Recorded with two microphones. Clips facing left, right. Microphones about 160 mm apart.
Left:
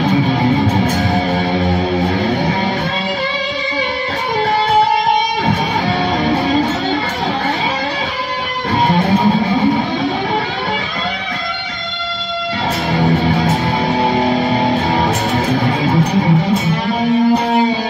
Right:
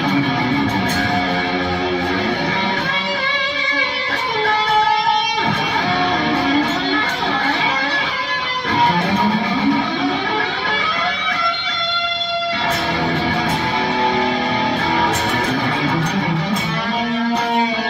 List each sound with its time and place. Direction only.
14.3 s music: 40° left (ahead or behind)
15.8 s music: 30° left (ahead or behind)